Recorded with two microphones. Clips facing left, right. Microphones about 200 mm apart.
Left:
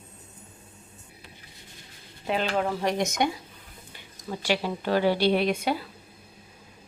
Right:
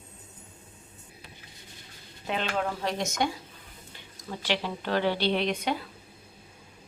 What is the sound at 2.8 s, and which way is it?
Speech, 15° left (ahead or behind).